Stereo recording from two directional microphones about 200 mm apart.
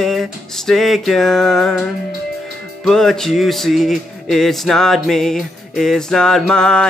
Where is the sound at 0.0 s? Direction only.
Centre (ahead or behind).